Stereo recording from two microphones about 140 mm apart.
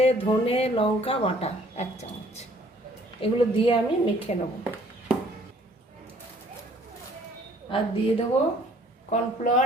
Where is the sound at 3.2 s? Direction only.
40° left (ahead or behind).